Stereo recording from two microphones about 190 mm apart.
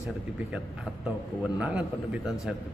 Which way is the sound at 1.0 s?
5° right (ahead or behind).